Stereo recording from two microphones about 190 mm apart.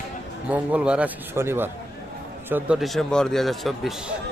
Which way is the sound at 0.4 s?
10° right (ahead or behind).